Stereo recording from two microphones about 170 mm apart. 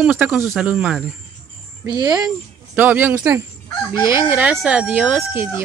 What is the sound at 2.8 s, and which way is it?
Speech, 10° right (ahead or behind).